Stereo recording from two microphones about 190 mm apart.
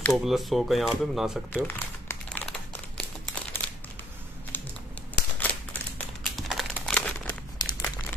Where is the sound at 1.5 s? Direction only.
10° left (ahead or behind).